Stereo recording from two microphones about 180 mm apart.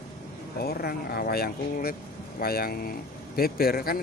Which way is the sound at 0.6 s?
60° left (ahead or behind).